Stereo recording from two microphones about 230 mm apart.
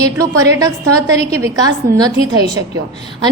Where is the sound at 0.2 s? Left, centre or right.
Centre.